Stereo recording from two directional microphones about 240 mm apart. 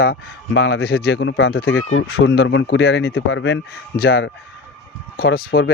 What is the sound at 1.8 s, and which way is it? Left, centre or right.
Speech, left.